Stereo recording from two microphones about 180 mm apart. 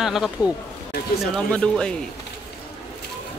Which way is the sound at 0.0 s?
Centre (ahead or behind).